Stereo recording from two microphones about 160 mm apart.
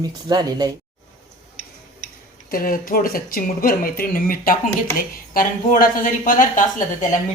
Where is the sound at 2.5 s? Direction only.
60° left (ahead or behind).